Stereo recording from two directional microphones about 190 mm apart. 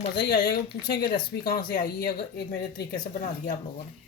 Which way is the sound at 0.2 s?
55° left (ahead or behind).